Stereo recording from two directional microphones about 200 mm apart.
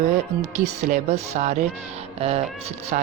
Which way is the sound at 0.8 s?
35° right (ahead or behind).